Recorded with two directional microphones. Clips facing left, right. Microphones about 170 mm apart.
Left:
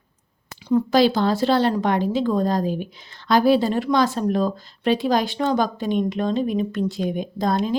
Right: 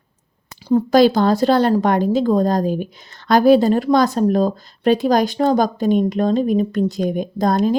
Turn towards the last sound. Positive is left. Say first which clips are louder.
# right 5 dB
turn(degrees=-45)  # may be behind; listen again after turning